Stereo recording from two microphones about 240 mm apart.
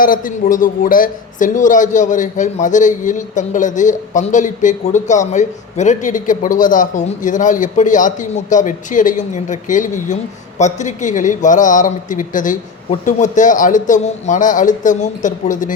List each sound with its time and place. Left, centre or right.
0.0 s a man's voice: left